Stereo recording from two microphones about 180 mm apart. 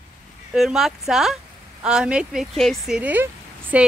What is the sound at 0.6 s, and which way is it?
A woman's voice, centre (ahead or behind).